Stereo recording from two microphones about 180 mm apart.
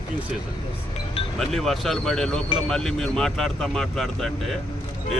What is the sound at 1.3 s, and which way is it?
Speech, centre (ahead or behind).